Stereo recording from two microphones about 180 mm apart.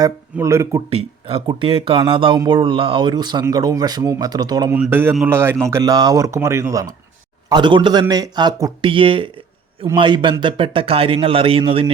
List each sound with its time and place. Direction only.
0.3 s speech: 15° right (ahead or behind)
0.9 s speech: 30° right (ahead or behind)
4.7 s speech: 10° right (ahead or behind); by 11.9 s 30° right (ahead or behind)